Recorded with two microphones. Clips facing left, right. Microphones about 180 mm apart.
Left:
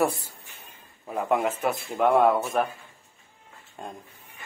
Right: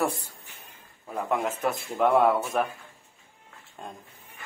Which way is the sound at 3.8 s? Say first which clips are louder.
Left 2 dB; centre (ahead or behind).